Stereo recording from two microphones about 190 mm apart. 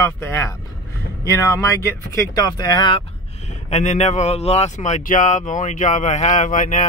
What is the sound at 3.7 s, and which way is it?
Speech, 35° left (ahead or behind).